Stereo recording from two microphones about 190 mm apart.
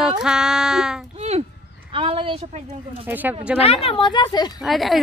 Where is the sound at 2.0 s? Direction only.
30° right (ahead or behind).